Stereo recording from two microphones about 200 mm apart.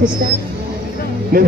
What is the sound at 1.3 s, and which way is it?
Speech, 45° right (ahead or behind).